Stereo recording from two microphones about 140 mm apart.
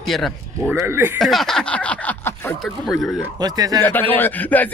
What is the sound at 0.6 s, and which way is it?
Speech, 15° right (ahead or behind).